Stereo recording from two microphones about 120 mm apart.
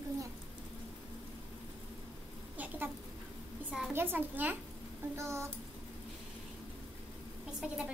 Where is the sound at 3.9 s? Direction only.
20° right (ahead or behind).